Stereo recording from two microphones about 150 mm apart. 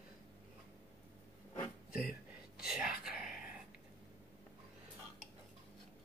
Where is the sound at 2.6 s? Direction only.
5° right (ahead or behind).